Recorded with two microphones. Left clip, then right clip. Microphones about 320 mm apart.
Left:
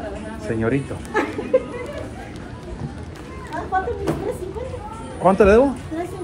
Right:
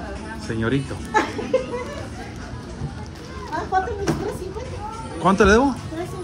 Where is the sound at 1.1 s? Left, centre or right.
Right.